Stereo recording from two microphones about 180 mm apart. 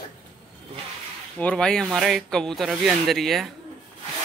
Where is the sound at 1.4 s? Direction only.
5° left (ahead or behind).